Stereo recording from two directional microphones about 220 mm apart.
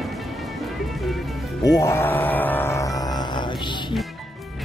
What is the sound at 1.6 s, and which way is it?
Music, 15° left (ahead or behind).